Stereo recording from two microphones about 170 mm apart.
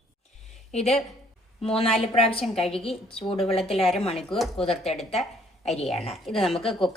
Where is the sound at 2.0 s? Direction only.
35° left (ahead or behind).